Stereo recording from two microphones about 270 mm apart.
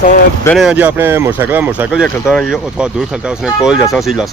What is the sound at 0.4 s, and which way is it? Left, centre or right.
Speech, centre.